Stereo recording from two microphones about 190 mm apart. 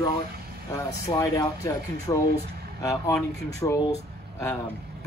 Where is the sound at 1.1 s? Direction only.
20° left (ahead or behind).